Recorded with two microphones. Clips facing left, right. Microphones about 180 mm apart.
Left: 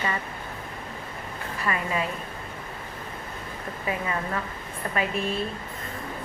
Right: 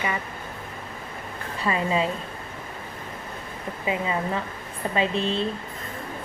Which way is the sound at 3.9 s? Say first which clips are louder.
Right 3 dB; 20° right (ahead or behind).